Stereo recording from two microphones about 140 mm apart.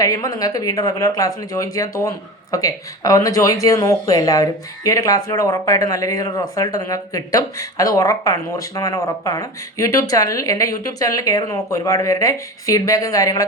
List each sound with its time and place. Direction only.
0.0 s speech: 25° left (ahead or behind)